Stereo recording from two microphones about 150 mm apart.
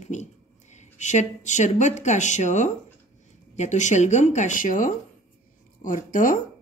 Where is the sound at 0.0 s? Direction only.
50° left (ahead or behind).